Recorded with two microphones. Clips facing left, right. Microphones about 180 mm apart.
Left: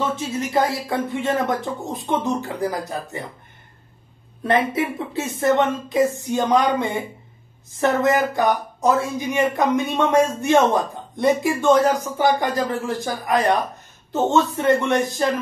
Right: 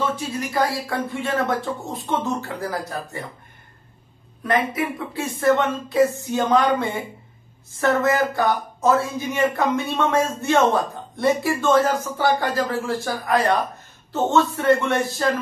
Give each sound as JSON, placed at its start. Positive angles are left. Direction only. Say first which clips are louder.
{"t": 0.1, "sound": "speech", "louder": "left 3 dB", "side_deg": 25}
{"t": 4.4, "sound": "speech", "louder": "left 2 dB", "side_deg": 25}